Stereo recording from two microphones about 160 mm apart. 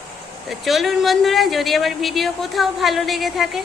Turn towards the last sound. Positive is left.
turn(degrees=0)  # may be behind; listen again after turning